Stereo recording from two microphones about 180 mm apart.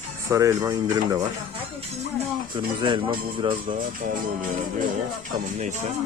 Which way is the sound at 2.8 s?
25° right (ahead or behind).